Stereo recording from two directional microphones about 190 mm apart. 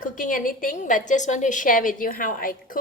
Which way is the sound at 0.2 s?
45° left (ahead or behind).